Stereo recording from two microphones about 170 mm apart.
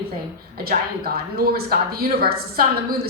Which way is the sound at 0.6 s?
60° right (ahead or behind).